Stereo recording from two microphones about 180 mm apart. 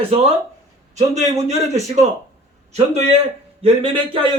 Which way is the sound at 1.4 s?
40° right (ahead or behind).